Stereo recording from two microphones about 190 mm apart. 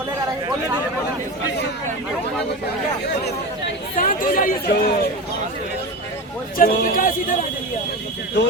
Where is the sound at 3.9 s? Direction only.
45° left (ahead or behind).